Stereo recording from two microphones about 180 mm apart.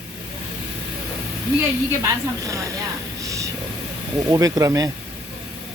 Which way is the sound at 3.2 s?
20° right (ahead or behind).